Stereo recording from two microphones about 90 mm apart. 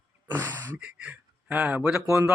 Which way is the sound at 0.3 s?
20° right (ahead or behind).